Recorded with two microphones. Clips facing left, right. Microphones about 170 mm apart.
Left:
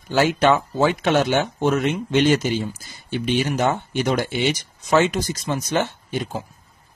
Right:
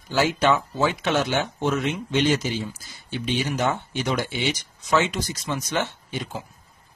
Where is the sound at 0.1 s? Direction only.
55° left (ahead or behind).